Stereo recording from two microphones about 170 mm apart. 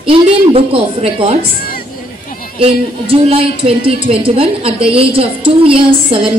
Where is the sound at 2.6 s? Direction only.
35° right (ahead or behind).